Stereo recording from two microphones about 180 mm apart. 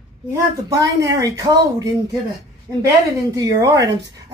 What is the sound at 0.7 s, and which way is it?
A woman's voice, 20° right (ahead or behind).